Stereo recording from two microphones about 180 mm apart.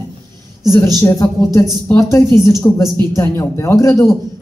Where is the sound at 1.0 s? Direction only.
15° left (ahead or behind).